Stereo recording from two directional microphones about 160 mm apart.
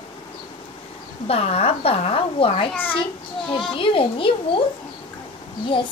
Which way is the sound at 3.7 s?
35° left (ahead or behind).